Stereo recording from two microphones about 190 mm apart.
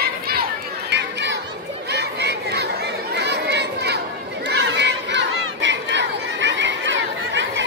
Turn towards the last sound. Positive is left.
turn(degrees=-75)  # may be behind; listen again after turning